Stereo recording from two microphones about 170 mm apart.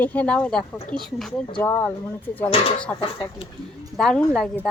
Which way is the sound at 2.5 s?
35° left (ahead or behind).